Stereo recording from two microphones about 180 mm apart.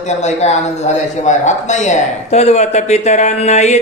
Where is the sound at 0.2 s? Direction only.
40° left (ahead or behind).